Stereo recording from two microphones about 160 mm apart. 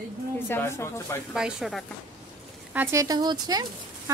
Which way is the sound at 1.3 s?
5° right (ahead or behind).